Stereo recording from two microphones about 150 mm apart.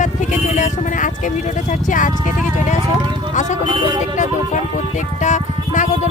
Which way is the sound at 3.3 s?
55° left (ahead or behind).